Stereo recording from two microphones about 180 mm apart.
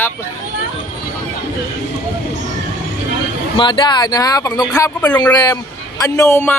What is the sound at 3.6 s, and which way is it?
A man's voice, 25° left (ahead or behind).